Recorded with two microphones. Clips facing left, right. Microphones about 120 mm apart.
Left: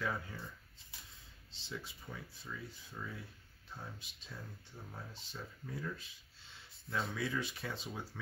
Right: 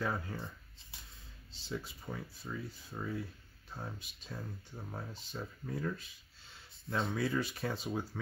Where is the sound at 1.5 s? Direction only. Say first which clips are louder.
Right 5 dB; 45° right (ahead or behind).